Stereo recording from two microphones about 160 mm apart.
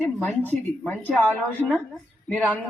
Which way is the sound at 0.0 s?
10° left (ahead or behind).